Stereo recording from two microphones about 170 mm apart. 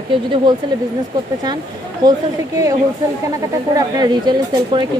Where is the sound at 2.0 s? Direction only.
20° right (ahead or behind).